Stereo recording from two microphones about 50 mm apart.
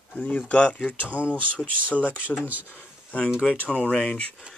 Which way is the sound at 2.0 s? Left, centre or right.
Right.